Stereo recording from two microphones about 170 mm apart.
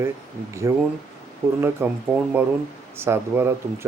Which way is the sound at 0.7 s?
20° right (ahead or behind).